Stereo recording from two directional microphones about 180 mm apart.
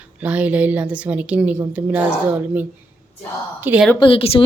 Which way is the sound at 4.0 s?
30° left (ahead or behind).